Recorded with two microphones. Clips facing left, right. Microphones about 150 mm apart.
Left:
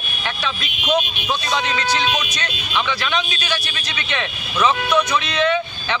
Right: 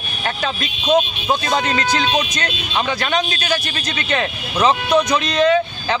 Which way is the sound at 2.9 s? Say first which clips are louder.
Right 3 dB; 45° right (ahead or behind).